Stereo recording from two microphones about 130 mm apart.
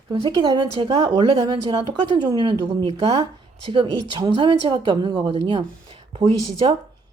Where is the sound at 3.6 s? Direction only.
40° right (ahead or behind).